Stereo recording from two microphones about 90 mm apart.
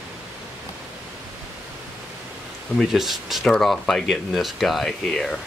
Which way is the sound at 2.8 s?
Centre (ahead or behind).